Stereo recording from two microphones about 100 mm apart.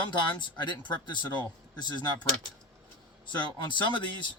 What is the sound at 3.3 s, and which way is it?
Speech, 50° left (ahead or behind).